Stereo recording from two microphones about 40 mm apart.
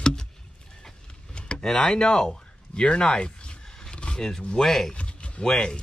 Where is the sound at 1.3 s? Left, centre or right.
Left.